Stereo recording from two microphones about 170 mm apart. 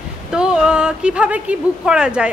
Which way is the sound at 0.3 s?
5° right (ahead or behind).